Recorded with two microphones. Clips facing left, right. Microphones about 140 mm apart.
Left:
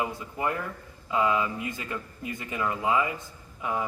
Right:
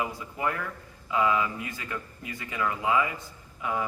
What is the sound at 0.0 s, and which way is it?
A man's voice, 25° left (ahead or behind).